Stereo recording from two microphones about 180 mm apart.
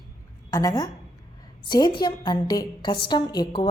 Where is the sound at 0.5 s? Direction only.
20° left (ahead or behind).